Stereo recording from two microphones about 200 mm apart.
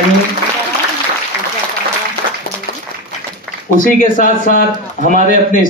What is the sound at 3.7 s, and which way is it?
A man's voice, 40° left (ahead or behind).